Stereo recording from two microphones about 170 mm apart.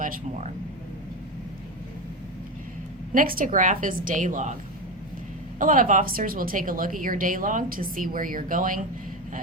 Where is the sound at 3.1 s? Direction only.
55° right (ahead or behind).